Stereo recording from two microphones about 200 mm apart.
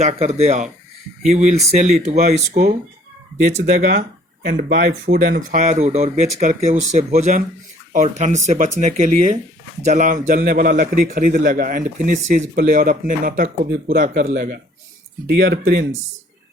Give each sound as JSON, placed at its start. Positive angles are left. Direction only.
{"t": 0.0, "sound": "a man's voice", "side_deg": -35}